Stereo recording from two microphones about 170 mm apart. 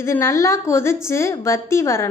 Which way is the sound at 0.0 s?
15° left (ahead or behind).